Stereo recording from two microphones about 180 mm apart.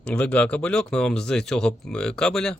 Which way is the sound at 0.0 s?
5° left (ahead or behind).